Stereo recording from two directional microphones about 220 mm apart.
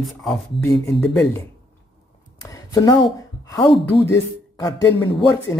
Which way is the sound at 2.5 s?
15° left (ahead or behind).